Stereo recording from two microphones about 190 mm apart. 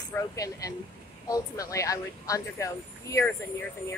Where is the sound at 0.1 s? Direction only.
15° left (ahead or behind).